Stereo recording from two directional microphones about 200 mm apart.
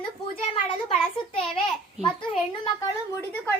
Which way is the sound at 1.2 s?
25° left (ahead or behind).